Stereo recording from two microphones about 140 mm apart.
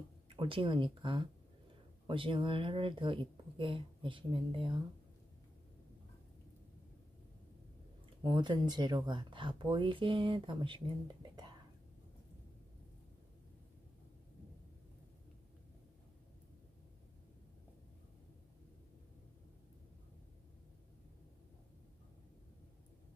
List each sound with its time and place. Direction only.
0.4 s speech: 40° right (ahead or behind)
8.2 s speech: 35° right (ahead or behind)